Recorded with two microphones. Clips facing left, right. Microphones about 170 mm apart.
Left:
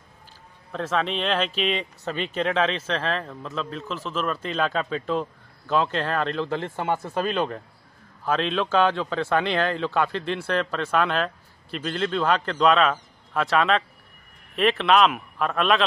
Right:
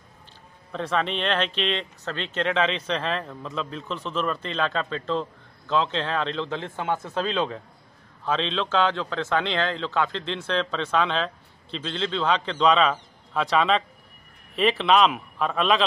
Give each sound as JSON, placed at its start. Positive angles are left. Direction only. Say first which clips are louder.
{"t": 0.7, "sound": "speech", "louder": "even", "side_deg": 0}